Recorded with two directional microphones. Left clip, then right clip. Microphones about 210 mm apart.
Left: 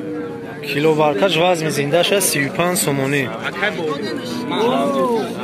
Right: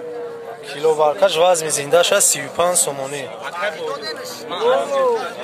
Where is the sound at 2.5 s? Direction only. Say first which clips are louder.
Even; 10° right (ahead or behind).